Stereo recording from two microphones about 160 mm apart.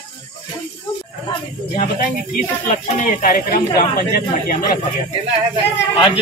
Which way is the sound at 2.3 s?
60° left (ahead or behind).